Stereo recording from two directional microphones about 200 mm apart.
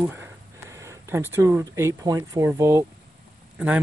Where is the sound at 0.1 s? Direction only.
10° right (ahead or behind).